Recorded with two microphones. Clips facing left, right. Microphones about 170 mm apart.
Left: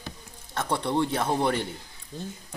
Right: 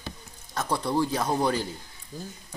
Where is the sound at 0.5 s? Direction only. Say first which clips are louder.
Even; 30° left (ahead or behind).